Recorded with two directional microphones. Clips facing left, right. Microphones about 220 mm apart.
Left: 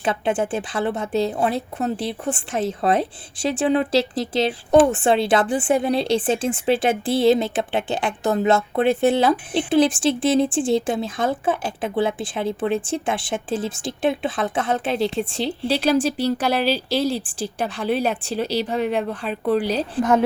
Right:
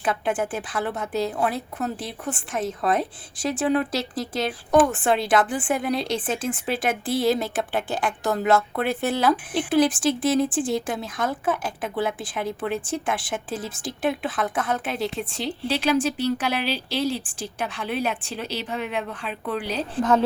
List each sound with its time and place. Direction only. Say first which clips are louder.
0.0 s a woman's voice: left 3 dB; 30° left (ahead or behind)
20.0 s a woman's voice: left 2 dB; 10° left (ahead or behind)